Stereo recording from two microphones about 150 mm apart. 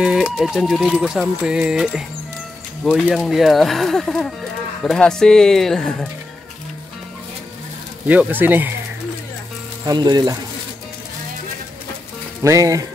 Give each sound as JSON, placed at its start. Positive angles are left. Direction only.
{"t": 0.0, "sound": "speech", "side_deg": -5}
{"t": 8.1, "sound": "speech", "side_deg": -10}
{"t": 9.8, "sound": "speech", "side_deg": -25}
{"t": 12.4, "sound": "speech", "side_deg": -20}